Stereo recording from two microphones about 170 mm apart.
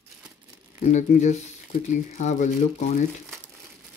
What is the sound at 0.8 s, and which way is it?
Speech, 45° left (ahead or behind).